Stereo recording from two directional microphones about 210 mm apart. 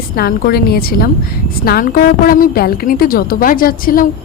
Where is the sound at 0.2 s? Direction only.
45° left (ahead or behind).